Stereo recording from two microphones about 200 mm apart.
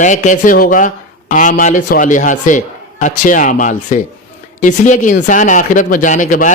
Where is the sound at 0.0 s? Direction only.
40° left (ahead or behind).